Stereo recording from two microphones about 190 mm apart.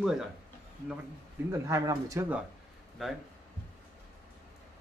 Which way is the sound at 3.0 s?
Centre (ahead or behind).